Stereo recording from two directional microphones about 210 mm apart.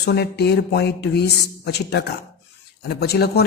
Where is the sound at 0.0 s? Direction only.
50° left (ahead or behind).